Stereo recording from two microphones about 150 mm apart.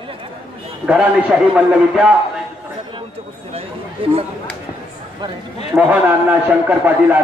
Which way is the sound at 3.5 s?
40° right (ahead or behind).